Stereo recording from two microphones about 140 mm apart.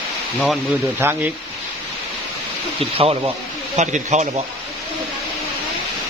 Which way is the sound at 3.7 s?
55° right (ahead or behind).